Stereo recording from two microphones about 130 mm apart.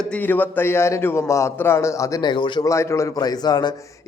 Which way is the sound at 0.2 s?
15° left (ahead or behind).